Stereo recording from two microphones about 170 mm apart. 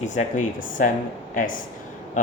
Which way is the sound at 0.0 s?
45° left (ahead or behind).